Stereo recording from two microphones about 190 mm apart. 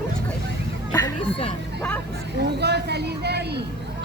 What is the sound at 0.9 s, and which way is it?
Speech, 20° left (ahead or behind).